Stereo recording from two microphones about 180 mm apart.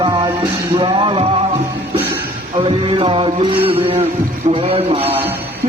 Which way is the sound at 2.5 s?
30° right (ahead or behind).